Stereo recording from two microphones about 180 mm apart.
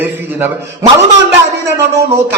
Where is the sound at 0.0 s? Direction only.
10° right (ahead or behind).